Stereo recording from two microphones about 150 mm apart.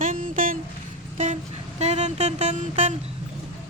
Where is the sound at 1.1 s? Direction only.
50° right (ahead or behind).